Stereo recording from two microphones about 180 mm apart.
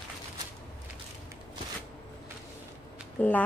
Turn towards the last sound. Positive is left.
turn(degrees=10)  # may be behind; listen again after turning